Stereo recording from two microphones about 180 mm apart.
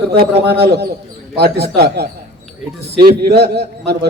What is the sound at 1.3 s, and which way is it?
A man's voice, 65° right (ahead or behind).